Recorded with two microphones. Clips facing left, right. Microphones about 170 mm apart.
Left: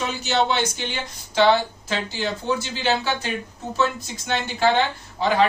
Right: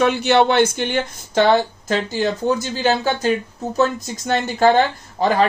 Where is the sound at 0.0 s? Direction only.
60° right (ahead or behind).